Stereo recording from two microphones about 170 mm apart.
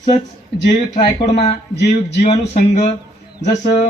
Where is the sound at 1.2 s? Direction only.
40° left (ahead or behind).